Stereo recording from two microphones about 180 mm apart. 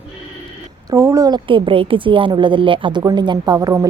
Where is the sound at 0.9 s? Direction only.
15° right (ahead or behind).